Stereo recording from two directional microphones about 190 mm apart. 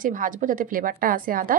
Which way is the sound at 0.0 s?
45° right (ahead or behind).